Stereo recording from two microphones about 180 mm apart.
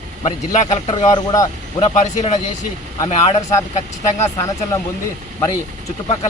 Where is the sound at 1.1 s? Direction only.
20° left (ahead or behind).